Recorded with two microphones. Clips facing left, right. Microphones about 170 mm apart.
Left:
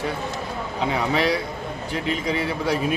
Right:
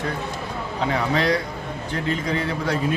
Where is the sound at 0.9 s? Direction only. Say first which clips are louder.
Right 1 dB; 10° left (ahead or behind).